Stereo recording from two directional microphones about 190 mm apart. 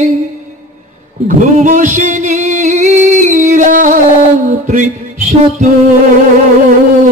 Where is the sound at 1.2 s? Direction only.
40° right (ahead or behind).